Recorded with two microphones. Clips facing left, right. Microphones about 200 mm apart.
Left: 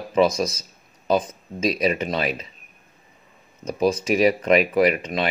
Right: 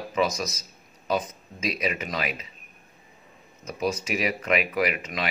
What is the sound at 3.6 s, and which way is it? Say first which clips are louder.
Speech: left 7 dB; 30° left (ahead or behind).